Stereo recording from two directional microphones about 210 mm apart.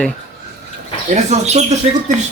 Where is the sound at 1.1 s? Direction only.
30° right (ahead or behind).